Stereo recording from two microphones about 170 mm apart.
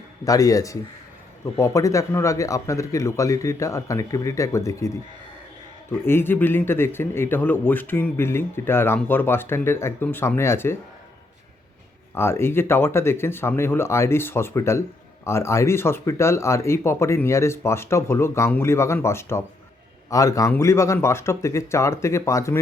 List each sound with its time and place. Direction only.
0.3 s a man's voice: 20° left (ahead or behind)
5.9 s speech: 15° left (ahead or behind)
12.1 s a man's voice: 15° left (ahead or behind)